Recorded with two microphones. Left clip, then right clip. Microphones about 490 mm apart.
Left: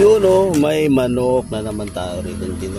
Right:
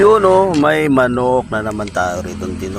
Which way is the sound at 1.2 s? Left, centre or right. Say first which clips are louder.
Right 3 dB; left.